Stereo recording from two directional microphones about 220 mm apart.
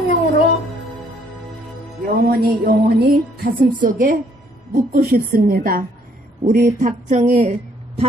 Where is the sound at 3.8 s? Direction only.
35° right (ahead or behind).